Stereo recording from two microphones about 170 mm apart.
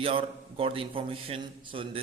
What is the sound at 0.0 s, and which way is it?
Speech, 30° right (ahead or behind).